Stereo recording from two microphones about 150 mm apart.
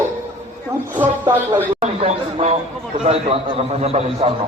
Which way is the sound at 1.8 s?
45° right (ahead or behind).